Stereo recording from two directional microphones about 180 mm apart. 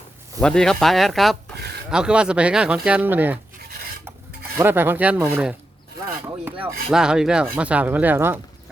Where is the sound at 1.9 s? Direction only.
5° right (ahead or behind).